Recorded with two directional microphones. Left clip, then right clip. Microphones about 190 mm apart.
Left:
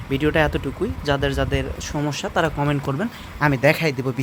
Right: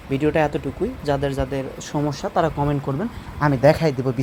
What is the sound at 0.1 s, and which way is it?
Speech, 10° left (ahead or behind).